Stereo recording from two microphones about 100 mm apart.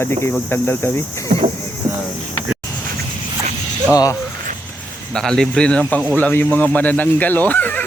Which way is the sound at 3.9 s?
35° left (ahead or behind).